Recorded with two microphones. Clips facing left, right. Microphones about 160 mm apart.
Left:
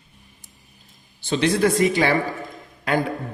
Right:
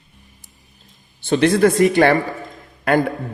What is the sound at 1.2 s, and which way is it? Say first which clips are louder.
A man's voice: right 5 dB; 55° right (ahead or behind).